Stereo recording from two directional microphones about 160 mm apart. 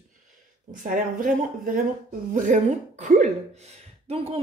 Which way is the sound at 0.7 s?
55° right (ahead or behind).